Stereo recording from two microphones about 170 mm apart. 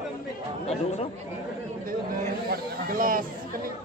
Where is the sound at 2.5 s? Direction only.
60° right (ahead or behind).